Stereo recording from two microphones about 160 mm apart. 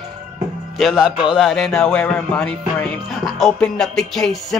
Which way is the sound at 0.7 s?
Centre (ahead or behind).